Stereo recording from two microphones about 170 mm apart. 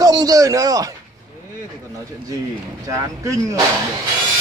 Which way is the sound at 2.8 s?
20° right (ahead or behind).